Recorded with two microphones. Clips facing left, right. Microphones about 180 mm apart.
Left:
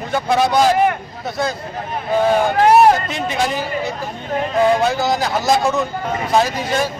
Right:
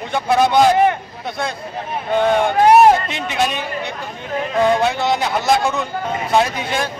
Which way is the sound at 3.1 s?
Centre (ahead or behind).